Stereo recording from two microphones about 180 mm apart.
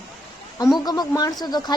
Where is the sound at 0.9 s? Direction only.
20° left (ahead or behind).